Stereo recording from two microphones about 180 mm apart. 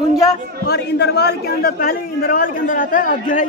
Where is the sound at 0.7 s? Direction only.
70° left (ahead or behind).